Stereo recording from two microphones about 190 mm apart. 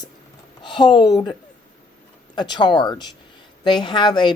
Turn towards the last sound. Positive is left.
turn(degrees=25)  # may be behind; listen again after turning